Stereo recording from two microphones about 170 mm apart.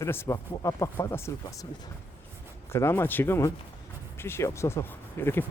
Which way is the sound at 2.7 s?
15° left (ahead or behind).